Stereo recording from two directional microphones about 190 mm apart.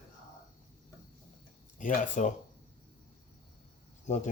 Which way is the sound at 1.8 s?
40° left (ahead or behind).